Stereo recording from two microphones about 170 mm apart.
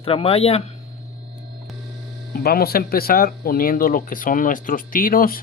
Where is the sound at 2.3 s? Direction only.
65° left (ahead or behind).